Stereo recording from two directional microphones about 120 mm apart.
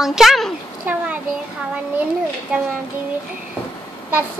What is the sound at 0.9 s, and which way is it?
Speech, 15° right (ahead or behind).